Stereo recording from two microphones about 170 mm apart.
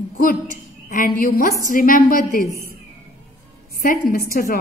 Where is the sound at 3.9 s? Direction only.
55° left (ahead or behind).